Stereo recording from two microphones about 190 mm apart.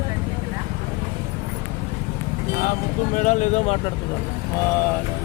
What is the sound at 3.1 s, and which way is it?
Speech, 40° left (ahead or behind).